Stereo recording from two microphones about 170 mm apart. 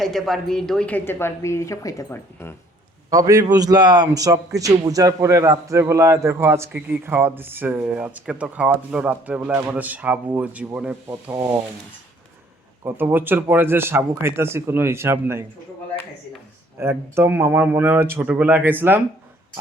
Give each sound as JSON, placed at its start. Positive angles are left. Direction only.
{"t": 0.0, "sound": "a woman's voice", "side_deg": 0}
{"t": 3.1, "sound": "a man's voice", "side_deg": -20}
{"t": 12.8, "sound": "a man's voice", "side_deg": -15}
{"t": 16.7, "sound": "a man's voice", "side_deg": -15}